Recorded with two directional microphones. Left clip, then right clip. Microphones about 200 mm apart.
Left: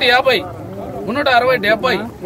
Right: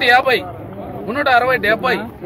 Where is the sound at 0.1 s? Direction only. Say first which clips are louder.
Even; 65° left (ahead or behind).